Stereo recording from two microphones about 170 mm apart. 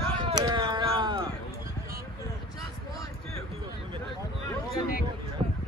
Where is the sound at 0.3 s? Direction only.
25° right (ahead or behind).